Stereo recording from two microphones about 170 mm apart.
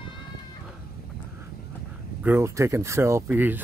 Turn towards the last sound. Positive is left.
turn(degrees=-10)  # may be behind; listen again after turning